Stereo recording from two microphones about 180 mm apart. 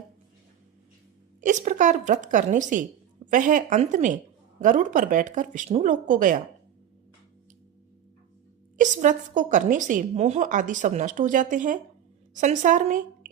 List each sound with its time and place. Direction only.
1.4 s a woman's voice: 45° right (ahead or behind)
8.8 s a woman's voice: 45° right (ahead or behind)